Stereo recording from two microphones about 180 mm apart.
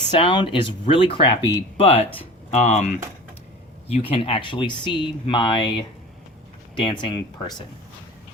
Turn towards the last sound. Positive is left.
turn(degrees=30)  # may be behind; listen again after turning